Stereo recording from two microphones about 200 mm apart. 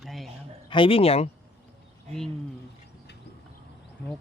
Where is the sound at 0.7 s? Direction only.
25° left (ahead or behind).